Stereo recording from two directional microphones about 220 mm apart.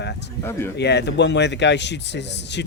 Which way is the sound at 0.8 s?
50° left (ahead or behind).